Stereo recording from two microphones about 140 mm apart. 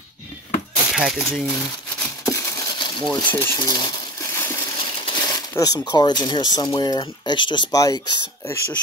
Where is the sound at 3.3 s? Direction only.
20° left (ahead or behind).